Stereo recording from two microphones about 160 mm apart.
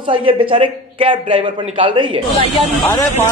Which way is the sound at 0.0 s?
35° right (ahead or behind).